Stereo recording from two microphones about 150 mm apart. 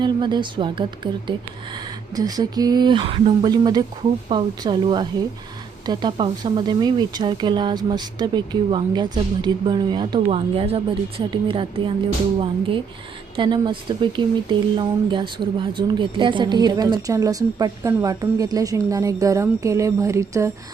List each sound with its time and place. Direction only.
0.0 s speech: 30° right (ahead or behind)
2.1 s a woman's voice: 25° right (ahead or behind)